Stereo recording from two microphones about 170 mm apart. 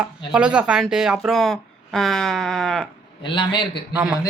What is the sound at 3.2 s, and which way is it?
Speech, 30° left (ahead or behind).